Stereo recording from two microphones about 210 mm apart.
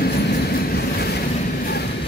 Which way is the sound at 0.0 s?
50° left (ahead or behind).